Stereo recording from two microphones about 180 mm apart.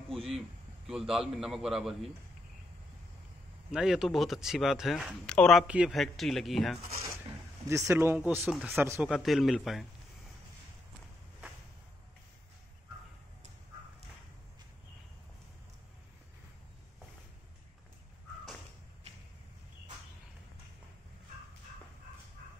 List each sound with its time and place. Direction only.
0.1 s a man's voice: centre (ahead or behind)
3.7 s speech: 5° right (ahead or behind)
7.6 s speech: 15° right (ahead or behind)
9.1 s speech: centre (ahead or behind)